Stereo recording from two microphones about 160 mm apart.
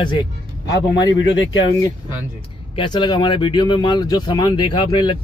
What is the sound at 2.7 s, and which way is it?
Speech, 30° left (ahead or behind).